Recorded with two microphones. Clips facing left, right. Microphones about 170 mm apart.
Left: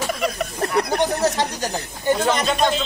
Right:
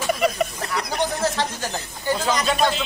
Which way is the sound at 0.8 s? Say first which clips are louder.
Left 5 dB; 60° left (ahead or behind).